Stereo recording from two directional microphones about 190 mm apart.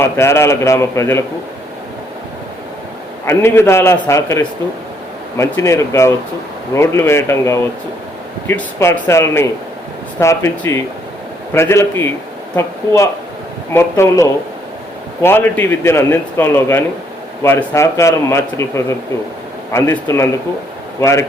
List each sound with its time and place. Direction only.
0.0 s a man's voice: 15° left (ahead or behind)
3.2 s a man's voice: 15° left (ahead or behind)